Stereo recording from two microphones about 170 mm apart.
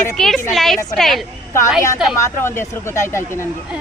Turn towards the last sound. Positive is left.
turn(degrees=15)  # may be behind; listen again after turning